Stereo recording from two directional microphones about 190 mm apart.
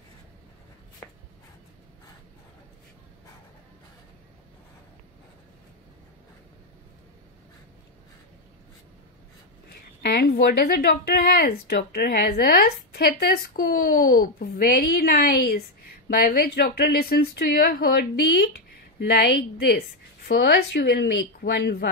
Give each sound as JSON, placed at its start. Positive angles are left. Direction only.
{"t": 10.0, "sound": "speech", "side_deg": 60}